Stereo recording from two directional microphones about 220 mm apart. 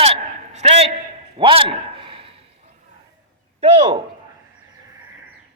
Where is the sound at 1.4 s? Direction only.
25° right (ahead or behind).